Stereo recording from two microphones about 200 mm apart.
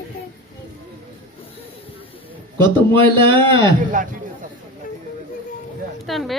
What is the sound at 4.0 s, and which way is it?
Speech, 40° right (ahead or behind).